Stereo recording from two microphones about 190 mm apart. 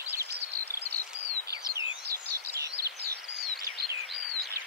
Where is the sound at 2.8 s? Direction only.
55° right (ahead or behind).